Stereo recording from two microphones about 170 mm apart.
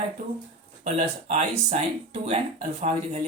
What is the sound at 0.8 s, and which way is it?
Speech, 45° right (ahead or behind).